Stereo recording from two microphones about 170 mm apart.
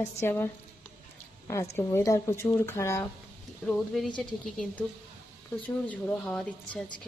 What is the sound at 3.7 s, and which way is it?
A woman's voice, centre (ahead or behind).